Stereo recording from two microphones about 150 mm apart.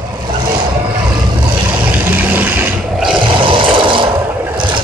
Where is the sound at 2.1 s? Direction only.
10° right (ahead or behind).